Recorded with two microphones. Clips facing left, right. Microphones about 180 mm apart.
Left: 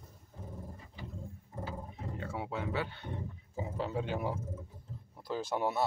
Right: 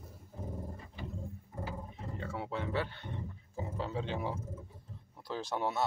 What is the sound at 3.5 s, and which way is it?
Speech, 10° left (ahead or behind).